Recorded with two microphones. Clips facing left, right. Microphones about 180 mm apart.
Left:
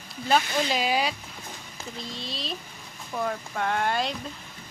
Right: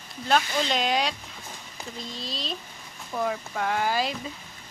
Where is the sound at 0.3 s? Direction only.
5° left (ahead or behind).